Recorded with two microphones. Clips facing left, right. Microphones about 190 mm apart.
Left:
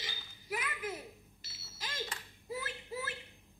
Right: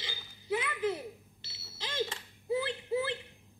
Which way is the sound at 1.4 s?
30° right (ahead or behind).